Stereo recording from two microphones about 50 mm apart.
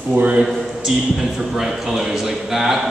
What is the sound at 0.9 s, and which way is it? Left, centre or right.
A man's voice, centre.